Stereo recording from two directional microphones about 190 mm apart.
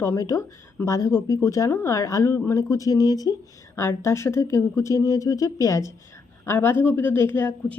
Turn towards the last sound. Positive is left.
turn(degrees=10)  # may be behind; listen again after turning